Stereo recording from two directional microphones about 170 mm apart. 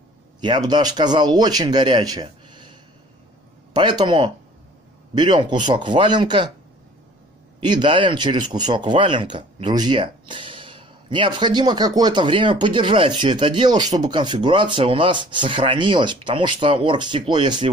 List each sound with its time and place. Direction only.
0.4 s speech: 25° right (ahead or behind)
7.6 s speech: 25° right (ahead or behind)